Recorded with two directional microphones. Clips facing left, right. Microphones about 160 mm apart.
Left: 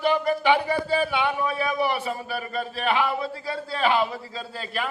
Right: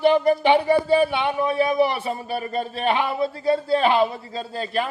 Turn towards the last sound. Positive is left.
turn(degrees=-30)  # may be behind; listen again after turning